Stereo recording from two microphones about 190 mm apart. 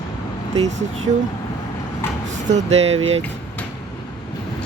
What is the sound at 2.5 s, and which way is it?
Speech, 35° right (ahead or behind).